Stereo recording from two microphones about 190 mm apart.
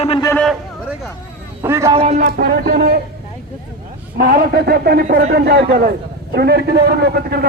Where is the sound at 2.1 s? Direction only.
50° right (ahead or behind).